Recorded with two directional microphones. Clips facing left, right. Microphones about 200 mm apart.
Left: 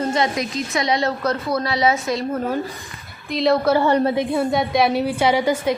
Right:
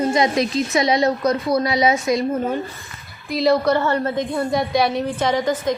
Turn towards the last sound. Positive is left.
turn(degrees=10)  # may be behind; listen again after turning